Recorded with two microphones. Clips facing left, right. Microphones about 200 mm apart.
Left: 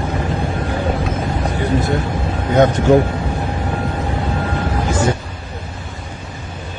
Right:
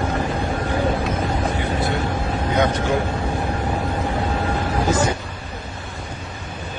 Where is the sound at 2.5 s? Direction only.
45° left (ahead or behind).